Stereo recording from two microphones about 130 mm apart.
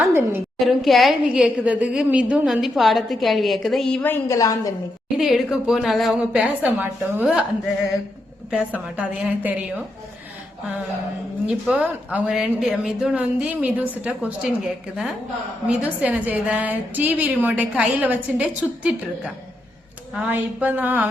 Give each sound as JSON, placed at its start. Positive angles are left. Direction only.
{"t": 0.0, "sound": "a woman's voice", "side_deg": -20}
{"t": 0.6, "sound": "a woman's voice", "side_deg": 0}
{"t": 5.1, "sound": "a woman's voice", "side_deg": -5}
{"t": 9.0, "sound": "a woman's voice", "side_deg": -10}
{"t": 11.4, "sound": "a woman's voice", "side_deg": -5}
{"t": 15.6, "sound": "a woman's voice", "side_deg": -10}